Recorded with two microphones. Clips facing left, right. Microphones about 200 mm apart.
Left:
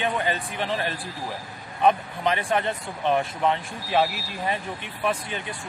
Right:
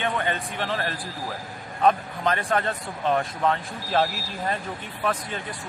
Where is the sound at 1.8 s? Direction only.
15° left (ahead or behind).